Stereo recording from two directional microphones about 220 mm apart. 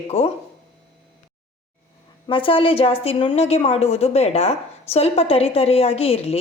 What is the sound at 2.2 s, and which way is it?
A woman's voice, 25° left (ahead or behind).